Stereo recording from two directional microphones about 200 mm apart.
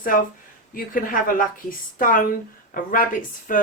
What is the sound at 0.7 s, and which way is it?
Speech, 45° left (ahead or behind).